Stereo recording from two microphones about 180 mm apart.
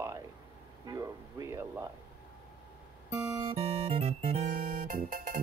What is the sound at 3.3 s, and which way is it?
Music, 30° right (ahead or behind).